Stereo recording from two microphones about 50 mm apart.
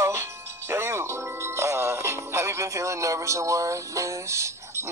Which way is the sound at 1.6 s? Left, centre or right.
Right.